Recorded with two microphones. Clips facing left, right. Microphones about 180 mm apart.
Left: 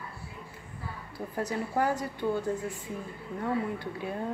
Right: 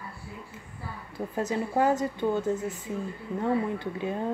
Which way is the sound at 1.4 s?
20° right (ahead or behind).